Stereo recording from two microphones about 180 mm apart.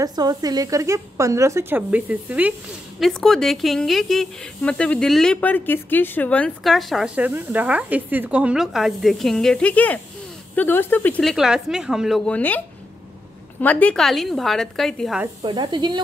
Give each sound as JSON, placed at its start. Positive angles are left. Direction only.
{"t": 0.0, "sound": "speech", "side_deg": -20}
{"t": 3.0, "sound": "speech", "side_deg": 5}
{"t": 12.4, "sound": "speech", "side_deg": 10}
{"t": 15.4, "sound": "speech", "side_deg": -25}